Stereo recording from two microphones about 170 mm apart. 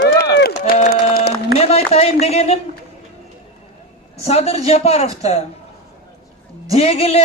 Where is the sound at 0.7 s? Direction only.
60° left (ahead or behind).